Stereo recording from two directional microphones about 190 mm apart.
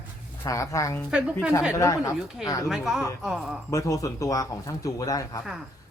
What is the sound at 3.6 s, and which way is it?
Speech, 15° left (ahead or behind).